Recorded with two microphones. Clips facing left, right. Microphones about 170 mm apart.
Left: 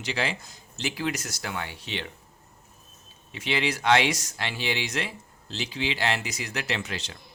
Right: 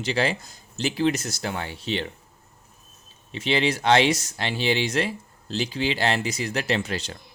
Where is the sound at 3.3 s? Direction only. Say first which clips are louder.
Right 5 dB; 30° right (ahead or behind).